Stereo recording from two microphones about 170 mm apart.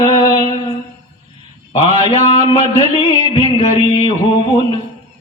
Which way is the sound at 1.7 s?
30° left (ahead or behind).